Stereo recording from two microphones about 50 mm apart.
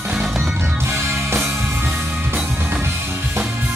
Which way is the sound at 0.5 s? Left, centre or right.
Right.